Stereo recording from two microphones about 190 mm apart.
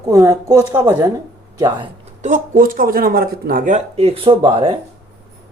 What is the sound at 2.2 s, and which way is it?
Speech, 40° right (ahead or behind).